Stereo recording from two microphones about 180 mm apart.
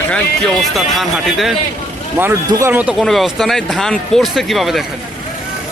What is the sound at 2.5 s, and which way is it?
Speech, 15° right (ahead or behind).